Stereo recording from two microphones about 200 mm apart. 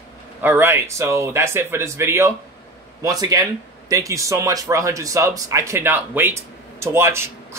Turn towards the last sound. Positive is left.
turn(degrees=-10)  # may be behind; listen again after turning